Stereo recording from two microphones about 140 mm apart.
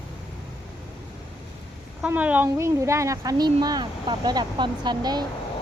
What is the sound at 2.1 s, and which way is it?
Speech, 10° right (ahead or behind).